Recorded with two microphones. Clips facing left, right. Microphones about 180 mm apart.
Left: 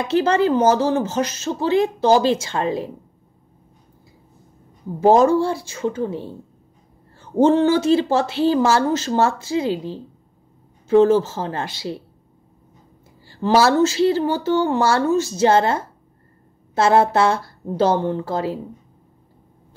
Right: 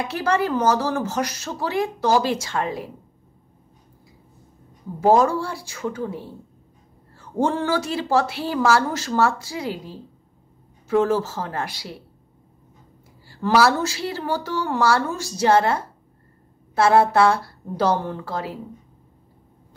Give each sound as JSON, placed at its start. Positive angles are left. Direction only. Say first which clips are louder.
{"t": 0.1, "sound": "speech", "louder": "left 7 dB", "side_deg": 25}
{"t": 5.0, "sound": "speech", "louder": "left 4 dB", "side_deg": 25}
{"t": 13.3, "sound": "speech", "louder": "left 2 dB", "side_deg": 25}